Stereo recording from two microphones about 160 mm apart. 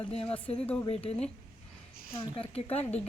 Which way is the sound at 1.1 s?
40° left (ahead or behind).